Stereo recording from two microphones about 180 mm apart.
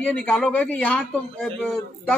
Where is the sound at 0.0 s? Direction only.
5° left (ahead or behind).